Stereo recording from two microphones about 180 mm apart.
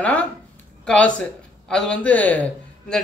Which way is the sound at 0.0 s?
5° left (ahead or behind).